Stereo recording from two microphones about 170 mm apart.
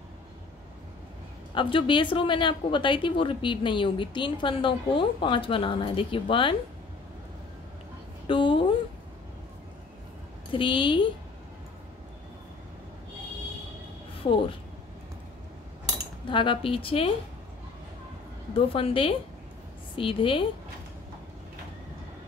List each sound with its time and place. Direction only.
1.5 s a woman's voice: 30° left (ahead or behind)
8.3 s a sound: 30° left (ahead or behind)
10.5 s a woman's voice: 30° left (ahead or behind)
16.3 s a woman's voice: 30° left (ahead or behind)
18.5 s a woman's voice: 35° left (ahead or behind)